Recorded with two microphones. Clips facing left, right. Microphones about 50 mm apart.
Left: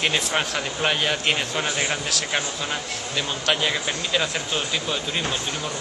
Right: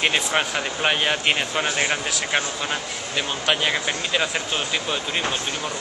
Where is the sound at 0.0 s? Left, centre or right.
Centre.